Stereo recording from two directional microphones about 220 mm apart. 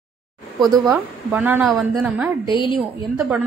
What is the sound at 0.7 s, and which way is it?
Speech, 15° right (ahead or behind).